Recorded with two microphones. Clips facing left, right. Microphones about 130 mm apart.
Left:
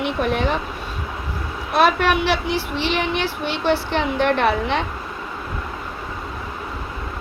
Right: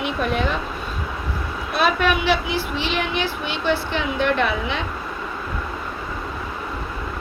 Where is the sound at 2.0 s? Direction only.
65° left (ahead or behind).